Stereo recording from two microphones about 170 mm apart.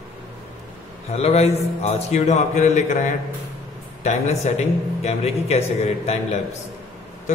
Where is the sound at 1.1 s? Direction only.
35° left (ahead or behind).